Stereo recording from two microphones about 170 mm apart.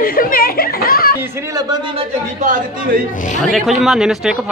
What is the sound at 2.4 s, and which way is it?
Speech, 55° right (ahead or behind).